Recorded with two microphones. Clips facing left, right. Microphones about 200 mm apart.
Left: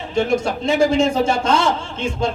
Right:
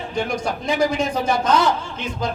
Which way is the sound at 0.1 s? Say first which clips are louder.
Left 6 dB; 25° left (ahead or behind).